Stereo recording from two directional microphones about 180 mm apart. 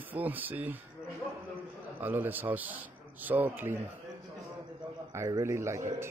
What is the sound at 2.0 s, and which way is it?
A man's voice, 10° right (ahead or behind).